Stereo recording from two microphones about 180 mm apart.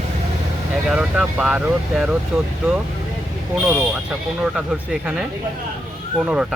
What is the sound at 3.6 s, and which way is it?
Speech, 5° right (ahead or behind).